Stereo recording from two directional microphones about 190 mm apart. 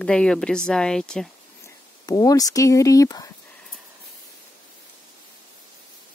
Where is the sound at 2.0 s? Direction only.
20° left (ahead or behind).